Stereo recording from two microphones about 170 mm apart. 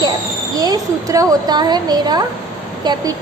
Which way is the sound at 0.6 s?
20° right (ahead or behind).